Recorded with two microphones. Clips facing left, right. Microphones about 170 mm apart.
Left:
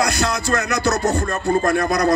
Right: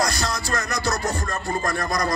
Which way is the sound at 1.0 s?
65° left (ahead or behind).